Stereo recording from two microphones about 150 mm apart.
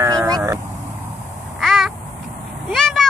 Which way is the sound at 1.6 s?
Centre (ahead or behind).